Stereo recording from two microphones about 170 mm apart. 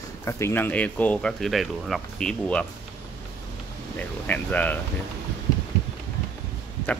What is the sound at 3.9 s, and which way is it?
Speech, 10° left (ahead or behind).